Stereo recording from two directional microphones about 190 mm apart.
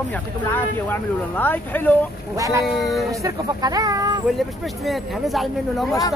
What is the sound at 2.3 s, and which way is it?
Speech, 15° right (ahead or behind).